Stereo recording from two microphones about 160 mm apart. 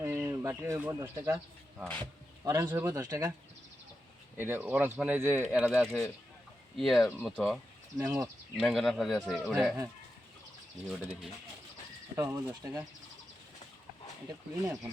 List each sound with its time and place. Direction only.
0.0 s speech: 15° right (ahead or behind)
1.8 s speech: 10° left (ahead or behind)
2.4 s speech: 20° right (ahead or behind)
4.4 s speech: 10° right (ahead or behind)
7.9 s speech: 15° right (ahead or behind)
8.5 s speech: centre (ahead or behind)
10.8 s speech: centre (ahead or behind)
12.1 s speech: 20° right (ahead or behind)